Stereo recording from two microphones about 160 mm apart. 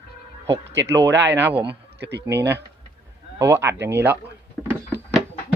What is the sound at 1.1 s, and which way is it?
Speech, 90° right.